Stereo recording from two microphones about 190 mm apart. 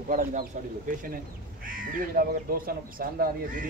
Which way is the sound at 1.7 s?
45° right (ahead or behind).